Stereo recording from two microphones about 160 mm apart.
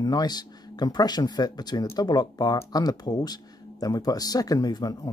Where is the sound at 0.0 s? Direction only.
25° left (ahead or behind).